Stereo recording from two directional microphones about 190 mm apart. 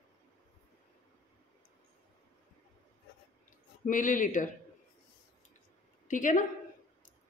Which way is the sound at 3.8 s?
45° left (ahead or behind).